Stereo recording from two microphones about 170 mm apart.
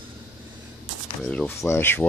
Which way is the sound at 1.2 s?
5° left (ahead or behind).